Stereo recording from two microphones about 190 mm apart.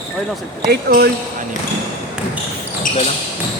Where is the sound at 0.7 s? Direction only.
55° right (ahead or behind).